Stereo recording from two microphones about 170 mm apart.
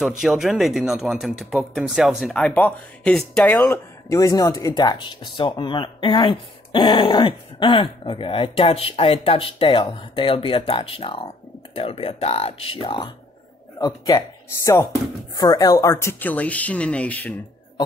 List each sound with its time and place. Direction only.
0.0 s speech: centre (ahead or behind)